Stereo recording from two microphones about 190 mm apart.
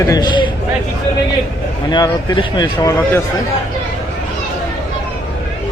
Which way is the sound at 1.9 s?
25° left (ahead or behind).